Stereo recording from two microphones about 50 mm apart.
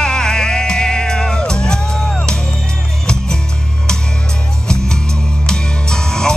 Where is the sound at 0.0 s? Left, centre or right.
Centre.